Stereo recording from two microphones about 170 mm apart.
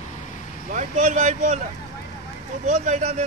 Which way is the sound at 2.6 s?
45° right (ahead or behind).